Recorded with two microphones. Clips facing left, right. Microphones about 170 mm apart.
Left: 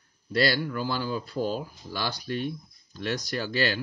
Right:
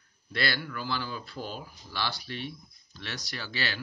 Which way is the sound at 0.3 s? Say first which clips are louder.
Left 7 dB; 40° left (ahead or behind).